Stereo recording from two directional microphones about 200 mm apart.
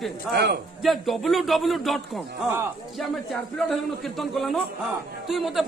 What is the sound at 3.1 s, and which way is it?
A man's voice, centre (ahead or behind).